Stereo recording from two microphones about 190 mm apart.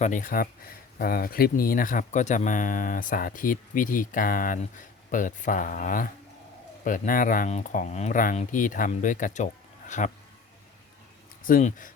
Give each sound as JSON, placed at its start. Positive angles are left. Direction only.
{"t": 0.0, "sound": "speech", "side_deg": 45}
{"t": 11.4, "sound": "speech", "side_deg": 45}